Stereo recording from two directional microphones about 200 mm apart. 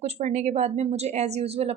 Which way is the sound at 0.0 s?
35° right (ahead or behind).